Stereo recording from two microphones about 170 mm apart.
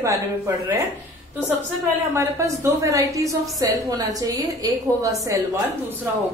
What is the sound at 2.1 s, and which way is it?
A woman's voice, 15° right (ahead or behind).